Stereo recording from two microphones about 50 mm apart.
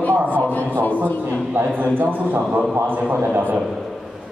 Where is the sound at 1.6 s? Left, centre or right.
Right.